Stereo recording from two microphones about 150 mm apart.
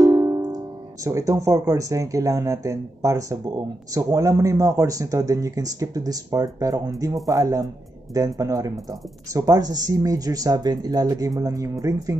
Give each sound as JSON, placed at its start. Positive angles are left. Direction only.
{"t": 0.0, "sound": "music", "side_deg": -20}
{"t": 1.0, "sound": "speech", "side_deg": -20}